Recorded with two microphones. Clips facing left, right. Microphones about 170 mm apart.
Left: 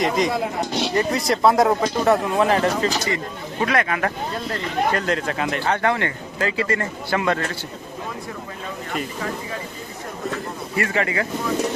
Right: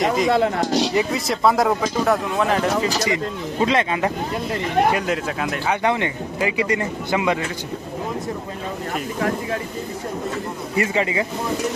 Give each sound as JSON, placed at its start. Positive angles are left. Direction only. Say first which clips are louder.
{"t": 0.0, "sound": "speech", "louder": "right 1 dB", "side_deg": 0}
{"t": 0.3, "sound": "speech", "louder": "right 5 dB", "side_deg": -65}
{"t": 0.9, "sound": "speech", "louder": "even", "side_deg": 0}
{"t": 3.6, "sound": "speech", "louder": "right 2 dB", "side_deg": -25}
{"t": 4.5, "sound": "speech", "louder": "right 4 dB", "side_deg": -10}
{"t": 5.7, "sound": "speech", "louder": "right 1 dB", "side_deg": -15}
{"t": 10.8, "sound": "speech", "louder": "right 2 dB", "side_deg": -20}